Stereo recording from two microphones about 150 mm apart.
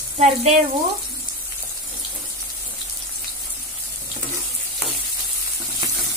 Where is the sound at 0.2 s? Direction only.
50° right (ahead or behind).